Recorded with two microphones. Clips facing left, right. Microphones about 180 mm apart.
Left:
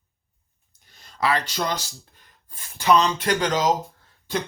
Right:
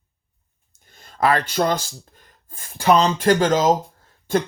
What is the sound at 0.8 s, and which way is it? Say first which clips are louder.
Speech: right 5 dB; 50° right (ahead or behind).